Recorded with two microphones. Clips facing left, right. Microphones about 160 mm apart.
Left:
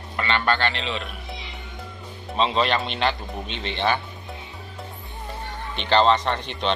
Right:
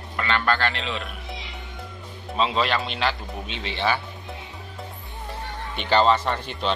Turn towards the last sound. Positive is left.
turn(degrees=-5)  # may be behind; listen again after turning